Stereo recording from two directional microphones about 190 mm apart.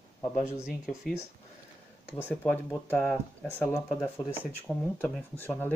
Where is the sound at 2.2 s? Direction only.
10° left (ahead or behind).